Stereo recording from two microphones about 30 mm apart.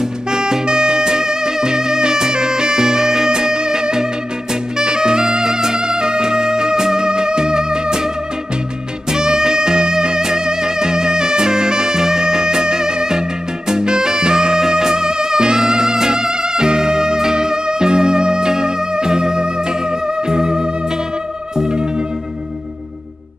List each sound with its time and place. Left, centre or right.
0.3 s music: right
4.7 s saxophone: right
9.1 s music: right